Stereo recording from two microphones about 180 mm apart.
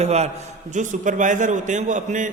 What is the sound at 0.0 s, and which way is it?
A man's voice, 35° right (ahead or behind).